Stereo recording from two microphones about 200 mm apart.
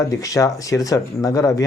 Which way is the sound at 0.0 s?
15° left (ahead or behind).